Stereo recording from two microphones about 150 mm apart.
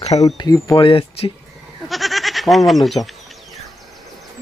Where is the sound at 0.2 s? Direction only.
25° left (ahead or behind).